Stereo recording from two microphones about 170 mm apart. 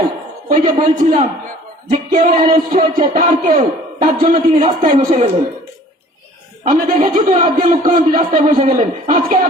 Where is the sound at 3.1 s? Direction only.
50° right (ahead or behind).